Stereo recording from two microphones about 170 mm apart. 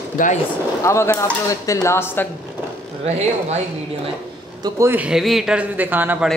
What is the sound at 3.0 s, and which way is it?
Speech, 40° right (ahead or behind).